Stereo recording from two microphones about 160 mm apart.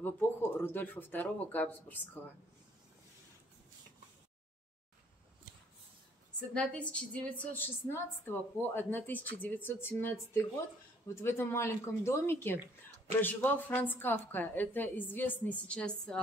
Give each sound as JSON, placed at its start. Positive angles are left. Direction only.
{"t": 0.0, "sound": "a woman's voice", "side_deg": 15}
{"t": 6.5, "sound": "a woman's voice", "side_deg": 5}